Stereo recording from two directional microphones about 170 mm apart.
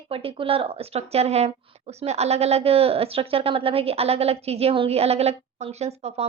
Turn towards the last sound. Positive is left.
turn(degrees=-40)  # may be behind; listen again after turning